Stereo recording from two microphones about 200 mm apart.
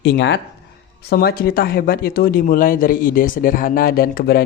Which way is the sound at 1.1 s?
50° left (ahead or behind).